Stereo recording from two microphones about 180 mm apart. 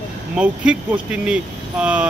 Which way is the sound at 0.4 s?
5° right (ahead or behind).